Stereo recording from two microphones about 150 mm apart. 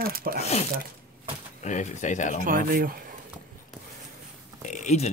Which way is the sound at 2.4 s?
70° right (ahead or behind).